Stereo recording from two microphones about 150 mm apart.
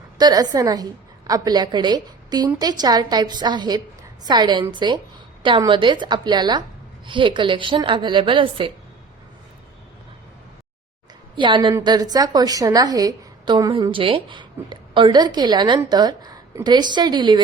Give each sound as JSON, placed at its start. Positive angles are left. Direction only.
{"t": 0.2, "sound": "a woman's voice", "side_deg": -25}
{"t": 11.3, "sound": "a woman's voice", "side_deg": -30}